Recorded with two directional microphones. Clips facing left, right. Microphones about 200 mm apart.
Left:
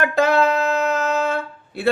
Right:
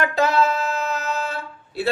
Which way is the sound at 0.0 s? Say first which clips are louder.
Left 2 dB; 50° left (ahead or behind).